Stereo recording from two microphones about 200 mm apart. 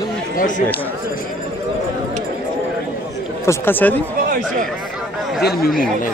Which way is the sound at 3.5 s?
10° left (ahead or behind).